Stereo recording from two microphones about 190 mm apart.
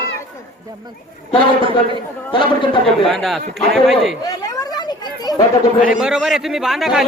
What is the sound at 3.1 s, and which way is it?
A man's voice, centre (ahead or behind).